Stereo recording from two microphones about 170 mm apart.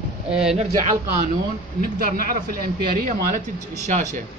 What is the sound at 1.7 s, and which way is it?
A man's voice, 60° right (ahead or behind).